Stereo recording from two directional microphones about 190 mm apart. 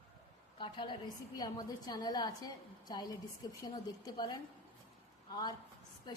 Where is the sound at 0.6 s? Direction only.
25° left (ahead or behind).